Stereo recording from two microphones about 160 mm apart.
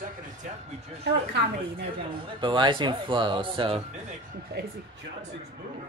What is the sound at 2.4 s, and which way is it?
Speech, 30° right (ahead or behind).